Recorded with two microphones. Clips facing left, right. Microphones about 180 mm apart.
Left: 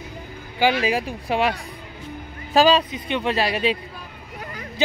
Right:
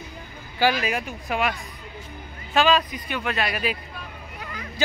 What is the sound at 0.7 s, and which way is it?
Speech, 30° left (ahead or behind).